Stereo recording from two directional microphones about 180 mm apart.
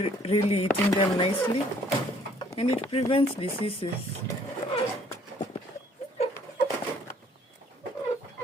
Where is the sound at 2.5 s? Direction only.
35° left (ahead or behind).